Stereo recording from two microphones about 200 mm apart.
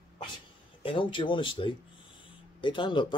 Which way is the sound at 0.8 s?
25° left (ahead or behind).